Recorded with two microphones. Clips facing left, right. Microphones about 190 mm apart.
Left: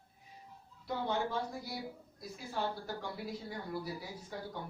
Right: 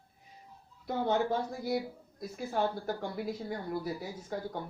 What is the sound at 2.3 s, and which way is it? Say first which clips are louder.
Speech: right 6 dB; 50° right (ahead or behind).